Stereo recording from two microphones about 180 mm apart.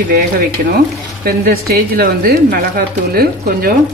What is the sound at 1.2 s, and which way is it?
Speech, 55° right (ahead or behind).